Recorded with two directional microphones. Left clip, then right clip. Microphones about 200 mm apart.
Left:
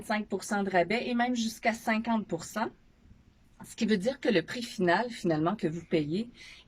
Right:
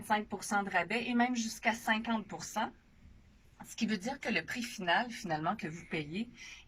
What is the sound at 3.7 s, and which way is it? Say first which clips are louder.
Speech: left 8 dB; 20° left (ahead or behind).